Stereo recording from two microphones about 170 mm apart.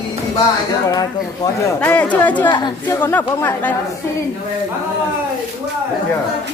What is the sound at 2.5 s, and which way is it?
Speech, 25° left (ahead or behind).